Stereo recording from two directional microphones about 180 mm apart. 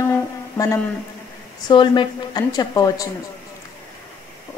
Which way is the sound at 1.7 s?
25° left (ahead or behind).